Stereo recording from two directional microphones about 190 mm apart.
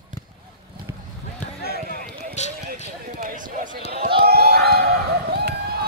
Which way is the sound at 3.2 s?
45° right (ahead or behind).